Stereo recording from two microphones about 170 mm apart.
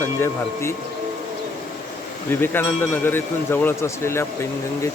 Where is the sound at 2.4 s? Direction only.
10° left (ahead or behind).